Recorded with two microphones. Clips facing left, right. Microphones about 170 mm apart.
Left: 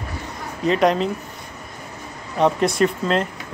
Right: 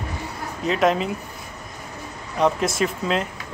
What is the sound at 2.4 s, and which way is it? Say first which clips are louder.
Speech: left 3 dB; centre (ahead or behind).